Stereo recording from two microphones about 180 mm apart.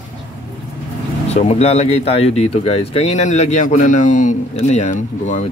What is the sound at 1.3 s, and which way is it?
Speech, 35° left (ahead or behind).